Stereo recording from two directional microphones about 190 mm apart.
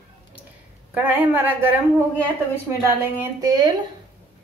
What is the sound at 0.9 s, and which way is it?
A woman's voice, 10° right (ahead or behind).